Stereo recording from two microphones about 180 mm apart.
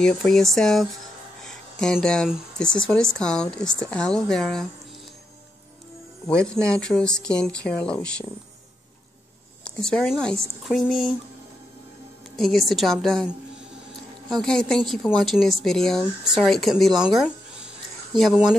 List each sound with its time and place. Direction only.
0.0 s speech: 5° left (ahead or behind)
6.2 s speech: 5° left (ahead or behind)
9.8 s speech: 5° left (ahead or behind)
12.4 s speech: centre (ahead or behind)
14.3 s speech: 5° left (ahead or behind)